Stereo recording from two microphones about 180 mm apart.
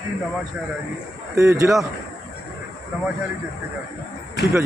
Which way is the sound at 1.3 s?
15° right (ahead or behind).